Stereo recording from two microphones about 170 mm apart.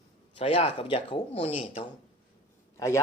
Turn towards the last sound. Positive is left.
turn(degrees=15)  # may be behind; listen again after turning